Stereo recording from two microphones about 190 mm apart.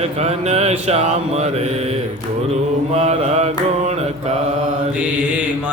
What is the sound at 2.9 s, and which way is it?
Mantra, 35° right (ahead or behind).